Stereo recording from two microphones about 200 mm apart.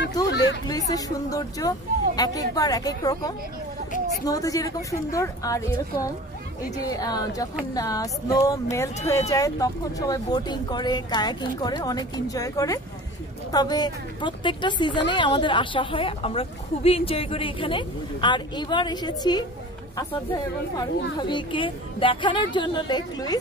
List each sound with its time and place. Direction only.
0.3 s a sound: 60° left (ahead or behind)
0.7 s a woman's voice: 20° left (ahead or behind)
21.2 s a woman's voice: 25° left (ahead or behind)